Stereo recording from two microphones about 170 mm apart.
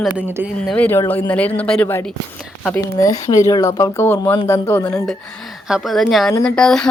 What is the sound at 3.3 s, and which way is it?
Speech, 20° left (ahead or behind).